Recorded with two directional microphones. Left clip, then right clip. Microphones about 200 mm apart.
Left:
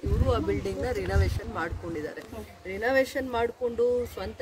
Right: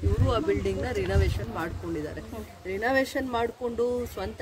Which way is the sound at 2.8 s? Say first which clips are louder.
Left 1 dB; 10° right (ahead or behind).